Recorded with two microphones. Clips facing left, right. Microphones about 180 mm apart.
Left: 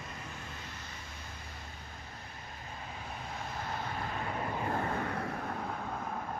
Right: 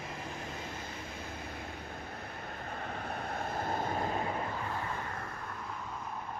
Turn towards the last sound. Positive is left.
turn(degrees=65)  # may be behind; listen again after turning